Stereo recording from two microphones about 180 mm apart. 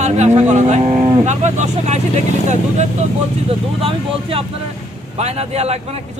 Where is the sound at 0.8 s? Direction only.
20° right (ahead or behind).